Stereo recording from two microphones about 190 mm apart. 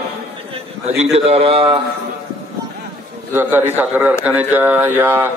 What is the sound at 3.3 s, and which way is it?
Speech, 10° right (ahead or behind).